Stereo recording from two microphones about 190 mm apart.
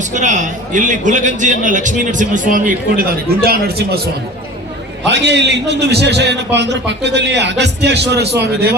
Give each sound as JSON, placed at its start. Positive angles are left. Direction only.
{"t": 0.0, "sound": "a man's voice", "side_deg": -40}
{"t": 3.4, "sound": "a man's voice", "side_deg": -55}
{"t": 5.0, "sound": "a man's voice", "side_deg": -65}